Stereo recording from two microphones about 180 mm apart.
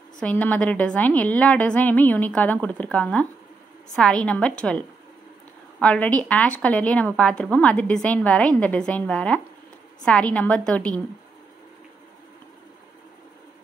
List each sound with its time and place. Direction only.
0.2 s a woman's voice: 10° left (ahead or behind)